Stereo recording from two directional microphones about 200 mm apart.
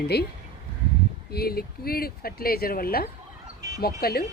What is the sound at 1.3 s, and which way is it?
Speech, 50° left (ahead or behind).